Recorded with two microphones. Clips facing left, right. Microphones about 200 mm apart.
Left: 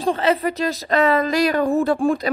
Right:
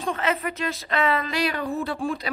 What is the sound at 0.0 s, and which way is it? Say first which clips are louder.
Speech: left 7 dB; 35° left (ahead or behind).